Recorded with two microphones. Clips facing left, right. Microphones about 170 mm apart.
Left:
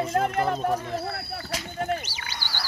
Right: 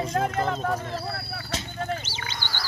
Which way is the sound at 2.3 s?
10° left (ahead or behind).